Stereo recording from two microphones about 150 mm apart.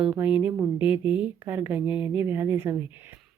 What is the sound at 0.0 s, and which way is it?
A woman's voice, 5° right (ahead or behind).